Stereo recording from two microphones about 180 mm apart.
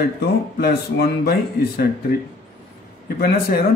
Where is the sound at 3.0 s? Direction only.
55° left (ahead or behind).